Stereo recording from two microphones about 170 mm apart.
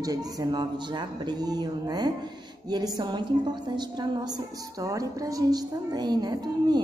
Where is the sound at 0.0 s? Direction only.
20° right (ahead or behind).